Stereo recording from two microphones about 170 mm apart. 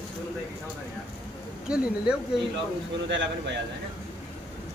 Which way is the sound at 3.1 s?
90° right.